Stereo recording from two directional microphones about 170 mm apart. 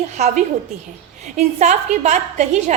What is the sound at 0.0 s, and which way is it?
A woman's voice, 40° right (ahead or behind).